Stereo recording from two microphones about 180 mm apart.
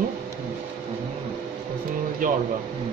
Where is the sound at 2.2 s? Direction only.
50° right (ahead or behind).